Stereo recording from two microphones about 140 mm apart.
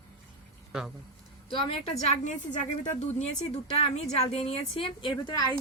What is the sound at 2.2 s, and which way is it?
A woman's voice, 55° left (ahead or behind).